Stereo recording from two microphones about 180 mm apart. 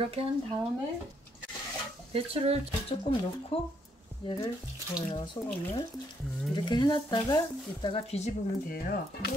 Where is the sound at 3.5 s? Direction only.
35° left (ahead or behind).